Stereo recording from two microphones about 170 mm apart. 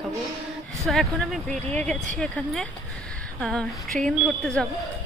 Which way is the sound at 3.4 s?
5° left (ahead or behind).